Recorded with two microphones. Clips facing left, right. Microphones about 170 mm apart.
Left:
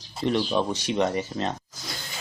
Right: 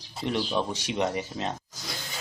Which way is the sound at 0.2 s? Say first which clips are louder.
Left 4 dB; 10° right (ahead or behind).